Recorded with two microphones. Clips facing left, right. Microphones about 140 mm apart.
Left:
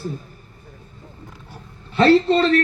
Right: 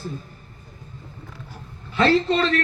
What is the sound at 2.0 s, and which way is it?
Speech, 30° left (ahead or behind).